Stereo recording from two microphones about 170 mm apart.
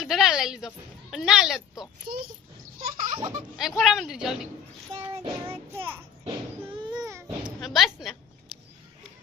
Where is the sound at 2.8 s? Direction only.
50° right (ahead or behind).